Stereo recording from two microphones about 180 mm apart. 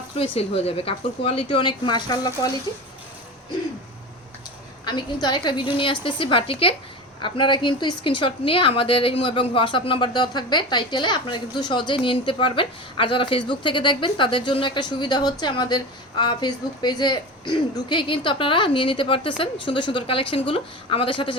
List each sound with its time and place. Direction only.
0.2 s a woman's voice: 35° left (ahead or behind)
4.9 s a woman's voice: 25° left (ahead or behind)